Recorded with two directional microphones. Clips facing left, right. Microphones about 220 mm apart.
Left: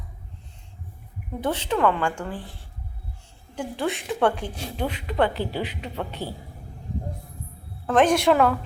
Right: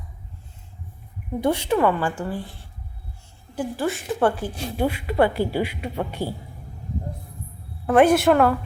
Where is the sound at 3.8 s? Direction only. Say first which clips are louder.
Right 1 dB; centre (ahead or behind).